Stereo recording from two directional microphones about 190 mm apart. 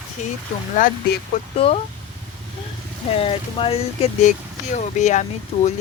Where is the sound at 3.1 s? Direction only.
30° left (ahead or behind).